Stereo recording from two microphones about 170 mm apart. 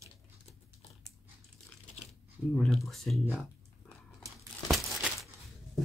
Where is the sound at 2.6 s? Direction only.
Centre (ahead or behind).